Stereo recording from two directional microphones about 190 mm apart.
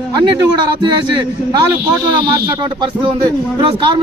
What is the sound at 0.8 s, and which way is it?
Speech, 25° right (ahead or behind).